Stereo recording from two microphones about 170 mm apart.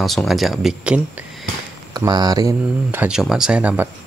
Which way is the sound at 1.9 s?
25° right (ahead or behind).